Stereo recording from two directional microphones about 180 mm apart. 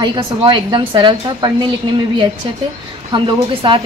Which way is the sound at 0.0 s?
25° right (ahead or behind).